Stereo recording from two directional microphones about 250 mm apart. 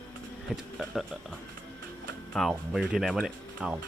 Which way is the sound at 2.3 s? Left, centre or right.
Centre.